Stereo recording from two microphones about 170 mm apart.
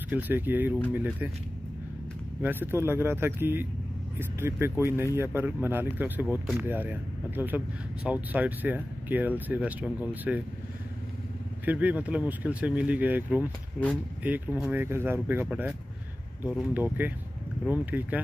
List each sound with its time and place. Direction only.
0.1 s speech: 10° right (ahead or behind)
2.4 s speech: 10° right (ahead or behind)
11.6 s speech: 10° right (ahead or behind)